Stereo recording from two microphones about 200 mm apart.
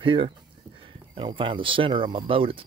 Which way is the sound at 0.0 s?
25° right (ahead or behind).